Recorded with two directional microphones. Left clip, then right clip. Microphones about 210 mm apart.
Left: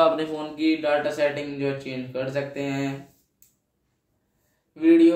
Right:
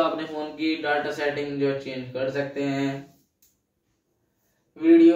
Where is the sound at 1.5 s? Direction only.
30° left (ahead or behind).